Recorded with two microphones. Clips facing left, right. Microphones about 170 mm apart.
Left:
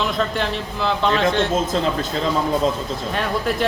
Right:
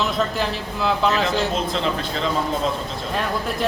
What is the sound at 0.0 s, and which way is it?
A man's voice, centre (ahead or behind).